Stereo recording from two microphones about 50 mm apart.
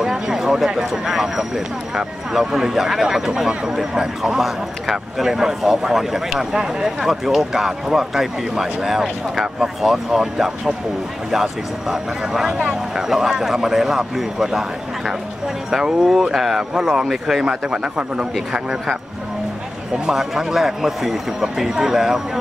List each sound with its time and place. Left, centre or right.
0.0 s speech: centre
11.9 s speech: centre
17.5 s speech: centre
20.1 s speech: centre